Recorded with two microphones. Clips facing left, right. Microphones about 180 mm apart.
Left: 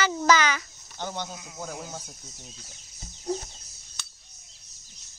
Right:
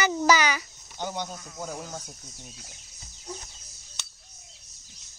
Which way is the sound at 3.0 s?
35° left (ahead or behind).